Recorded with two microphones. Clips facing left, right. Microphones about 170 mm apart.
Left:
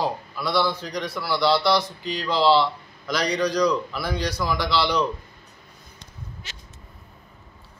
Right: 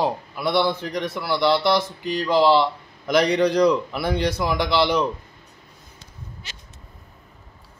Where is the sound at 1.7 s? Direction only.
50° right (ahead or behind).